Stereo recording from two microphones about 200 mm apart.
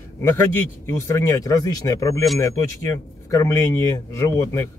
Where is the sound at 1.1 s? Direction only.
15° left (ahead or behind).